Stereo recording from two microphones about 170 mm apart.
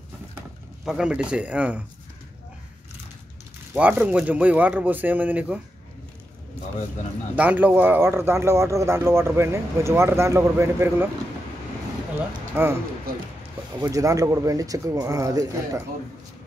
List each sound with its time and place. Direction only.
0.8 s speech: 5° right (ahead or behind)
3.7 s speech: 10° right (ahead or behind)
7.3 s speech: 10° right (ahead or behind)
12.6 s speech: 15° right (ahead or behind)
13.7 s speech: 20° right (ahead or behind)